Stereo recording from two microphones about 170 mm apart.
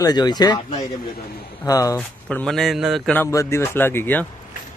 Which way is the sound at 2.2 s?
5° left (ahead or behind).